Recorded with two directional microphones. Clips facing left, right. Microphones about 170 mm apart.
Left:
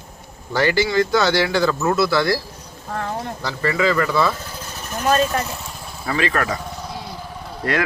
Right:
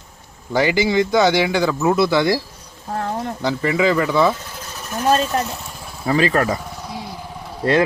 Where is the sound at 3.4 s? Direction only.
20° right (ahead or behind).